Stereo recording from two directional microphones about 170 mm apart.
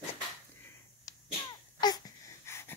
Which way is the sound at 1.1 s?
20° left (ahead or behind).